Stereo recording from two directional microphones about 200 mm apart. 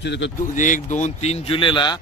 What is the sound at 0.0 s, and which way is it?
Speech, 60° left (ahead or behind).